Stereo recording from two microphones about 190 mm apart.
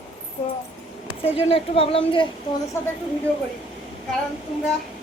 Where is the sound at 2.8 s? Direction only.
15° left (ahead or behind).